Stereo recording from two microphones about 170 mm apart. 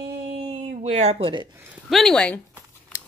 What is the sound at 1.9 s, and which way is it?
Speech, 5° left (ahead or behind).